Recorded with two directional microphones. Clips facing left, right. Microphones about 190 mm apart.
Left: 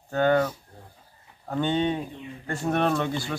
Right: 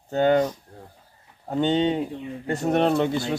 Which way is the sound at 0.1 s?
20° right (ahead or behind).